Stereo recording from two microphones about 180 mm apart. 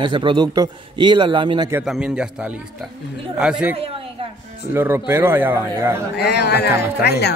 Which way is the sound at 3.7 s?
30° right (ahead or behind).